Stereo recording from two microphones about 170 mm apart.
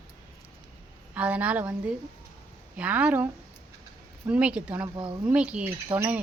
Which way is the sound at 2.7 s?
10° right (ahead or behind).